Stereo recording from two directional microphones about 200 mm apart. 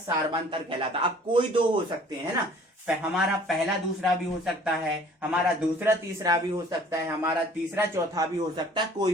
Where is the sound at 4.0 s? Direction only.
5° right (ahead or behind).